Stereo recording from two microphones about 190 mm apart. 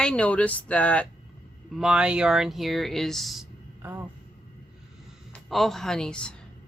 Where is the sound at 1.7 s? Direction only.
5° right (ahead or behind).